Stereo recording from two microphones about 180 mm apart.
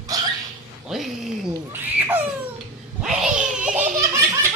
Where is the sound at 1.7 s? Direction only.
10° right (ahead or behind).